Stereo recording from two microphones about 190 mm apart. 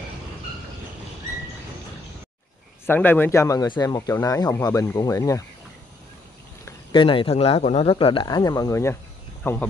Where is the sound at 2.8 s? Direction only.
10° left (ahead or behind).